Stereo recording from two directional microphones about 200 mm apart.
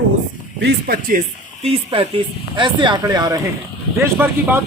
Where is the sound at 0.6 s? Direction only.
50° right (ahead or behind).